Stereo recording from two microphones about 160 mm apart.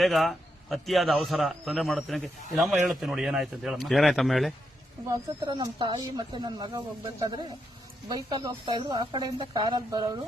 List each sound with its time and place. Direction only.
0.0 s a man's voice: centre (ahead or behind)
5.0 s speech: 20° right (ahead or behind)